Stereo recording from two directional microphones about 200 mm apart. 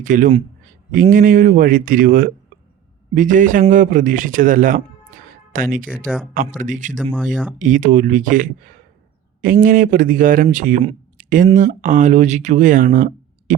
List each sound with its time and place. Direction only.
0.0 s a man's voice: 40° right (ahead or behind)
7.0 s speech: 5° left (ahead or behind)
7.6 s speech: 40° right (ahead or behind)
10.8 s a sound: 40° right (ahead or behind)
11.5 s speech: 40° right (ahead or behind)